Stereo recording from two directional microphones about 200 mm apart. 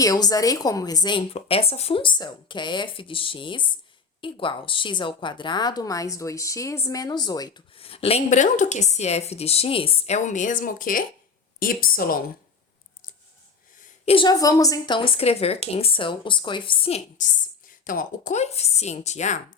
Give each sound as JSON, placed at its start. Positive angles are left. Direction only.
{"t": 0.0, "sound": "a woman's voice", "side_deg": 20}
{"t": 14.0, "sound": "a woman's voice", "side_deg": 25}
{"t": 17.7, "sound": "a woman's voice", "side_deg": 40}